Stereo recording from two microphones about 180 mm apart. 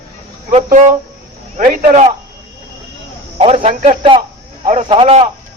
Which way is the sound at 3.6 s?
45° right (ahead or behind).